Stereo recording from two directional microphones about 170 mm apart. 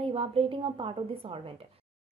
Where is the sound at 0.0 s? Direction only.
35° right (ahead or behind).